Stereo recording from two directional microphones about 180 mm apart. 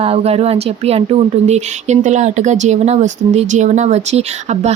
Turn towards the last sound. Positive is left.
turn(degrees=-40)  # may be behind; listen again after turning